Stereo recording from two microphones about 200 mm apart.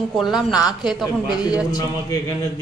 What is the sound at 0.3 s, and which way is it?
Speech, centre (ahead or behind).